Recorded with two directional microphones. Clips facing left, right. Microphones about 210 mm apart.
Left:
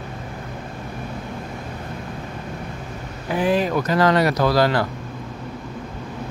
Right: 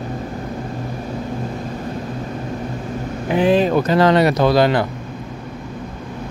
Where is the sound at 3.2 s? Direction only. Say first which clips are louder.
Right 5 dB; 25° right (ahead or behind).